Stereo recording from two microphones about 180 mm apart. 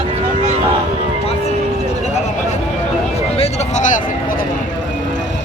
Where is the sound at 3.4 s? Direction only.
40° left (ahead or behind).